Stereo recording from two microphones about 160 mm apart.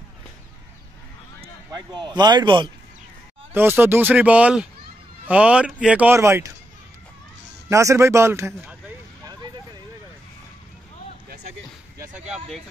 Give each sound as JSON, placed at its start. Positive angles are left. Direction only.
{"t": 1.4, "sound": "speech", "side_deg": -25}
{"t": 3.5, "sound": "a man's voice", "side_deg": -15}
{"t": 7.7, "sound": "a man's voice", "side_deg": -20}
{"t": 12.0, "sound": "speech", "side_deg": -10}